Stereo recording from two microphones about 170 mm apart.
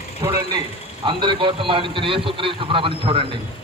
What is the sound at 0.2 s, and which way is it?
A man's voice, 20° right (ahead or behind).